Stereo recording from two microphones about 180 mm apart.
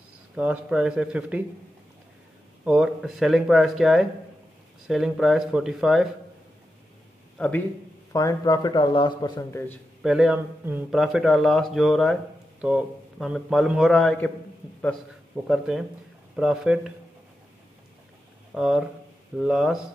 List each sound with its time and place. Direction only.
0.4 s speech: 5° right (ahead or behind)
2.6 s speech: 5° right (ahead or behind)
7.3 s a man's voice: 5° left (ahead or behind)
8.1 s a man's voice: 20° left (ahead or behind)
10.0 s speech: 5° right (ahead or behind)
15.4 s speech: 5° right (ahead or behind)
18.5 s speech: 5° right (ahead or behind)